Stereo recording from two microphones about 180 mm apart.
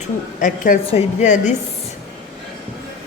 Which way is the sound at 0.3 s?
45° left (ahead or behind).